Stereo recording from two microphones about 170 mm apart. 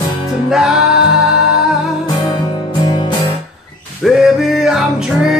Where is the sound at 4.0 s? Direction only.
5° right (ahead or behind).